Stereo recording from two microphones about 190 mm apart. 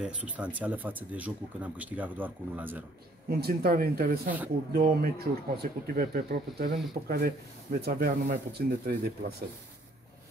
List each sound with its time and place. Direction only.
0.0 s speech: 5° right (ahead or behind)
3.3 s speech: 55° right (ahead or behind)